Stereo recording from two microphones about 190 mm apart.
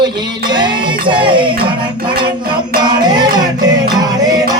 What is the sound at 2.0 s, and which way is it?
Music, 25° right (ahead or behind).